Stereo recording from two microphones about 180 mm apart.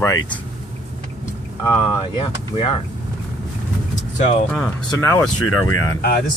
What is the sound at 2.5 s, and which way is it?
Speech, 30° left (ahead or behind).